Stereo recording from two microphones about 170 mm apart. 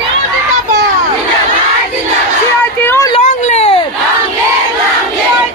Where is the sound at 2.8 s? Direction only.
15° left (ahead or behind).